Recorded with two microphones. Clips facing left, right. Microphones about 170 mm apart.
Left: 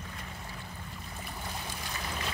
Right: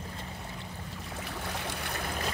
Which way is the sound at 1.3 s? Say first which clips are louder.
Right 4 dB; 75° right (ahead or behind).